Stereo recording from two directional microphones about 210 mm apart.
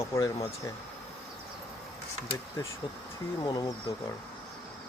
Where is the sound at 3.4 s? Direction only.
20° left (ahead or behind).